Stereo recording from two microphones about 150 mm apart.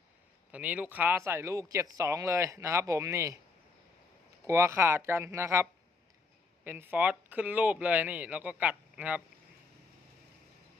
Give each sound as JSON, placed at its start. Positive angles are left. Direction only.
{"t": 0.5, "sound": "speech", "side_deg": -10}
{"t": 4.4, "sound": "speech", "side_deg": -20}
{"t": 6.7, "sound": "speech", "side_deg": -10}